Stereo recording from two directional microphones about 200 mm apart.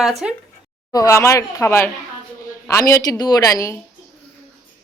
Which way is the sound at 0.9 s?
15° left (ahead or behind).